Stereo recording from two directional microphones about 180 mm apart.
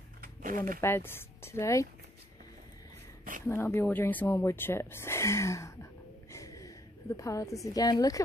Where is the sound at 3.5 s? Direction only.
15° left (ahead or behind).